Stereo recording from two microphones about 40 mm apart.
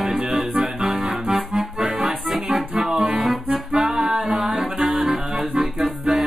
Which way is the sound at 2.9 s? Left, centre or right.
Right.